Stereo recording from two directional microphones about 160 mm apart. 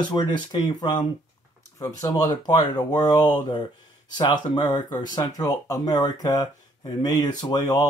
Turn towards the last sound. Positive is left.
turn(degrees=25)  # may be behind; listen again after turning